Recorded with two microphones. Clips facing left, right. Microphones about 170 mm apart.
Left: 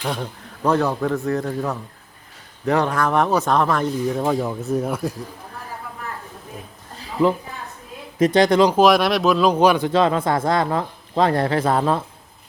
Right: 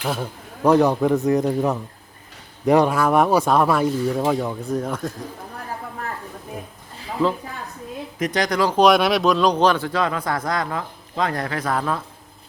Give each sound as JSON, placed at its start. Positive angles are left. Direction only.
{"t": 0.0, "sound": "speech", "side_deg": -5}
{"t": 0.7, "sound": "speech", "side_deg": -15}
{"t": 8.2, "sound": "speech", "side_deg": 25}
{"t": 8.7, "sound": "speech", "side_deg": 0}